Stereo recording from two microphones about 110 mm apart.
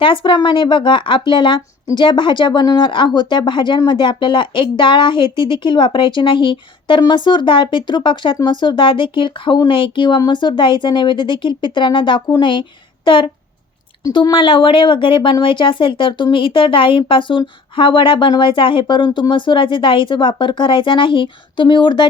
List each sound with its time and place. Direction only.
0.0 s speech: 50° left (ahead or behind)